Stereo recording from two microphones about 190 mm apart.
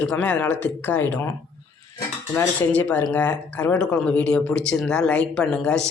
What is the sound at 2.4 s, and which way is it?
Speech, 10° left (ahead or behind).